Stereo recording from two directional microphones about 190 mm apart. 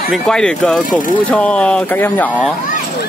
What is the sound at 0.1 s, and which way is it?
Speech, 5° left (ahead or behind).